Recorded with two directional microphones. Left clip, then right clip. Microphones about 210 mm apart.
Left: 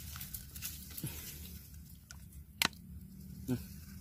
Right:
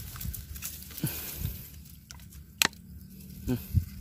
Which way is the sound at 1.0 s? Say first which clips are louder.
Right 11 dB; 30° right (ahead or behind).